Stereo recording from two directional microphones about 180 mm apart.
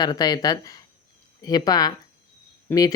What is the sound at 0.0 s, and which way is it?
Speech, 20° left (ahead or behind).